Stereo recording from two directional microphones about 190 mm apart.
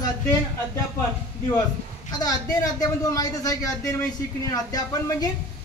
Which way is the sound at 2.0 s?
20° left (ahead or behind).